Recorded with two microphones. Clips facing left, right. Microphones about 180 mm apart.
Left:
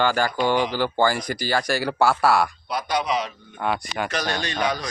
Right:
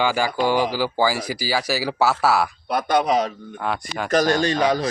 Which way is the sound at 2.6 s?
55° right (ahead or behind).